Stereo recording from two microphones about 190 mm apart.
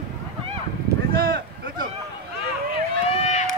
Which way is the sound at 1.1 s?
50° right (ahead or behind).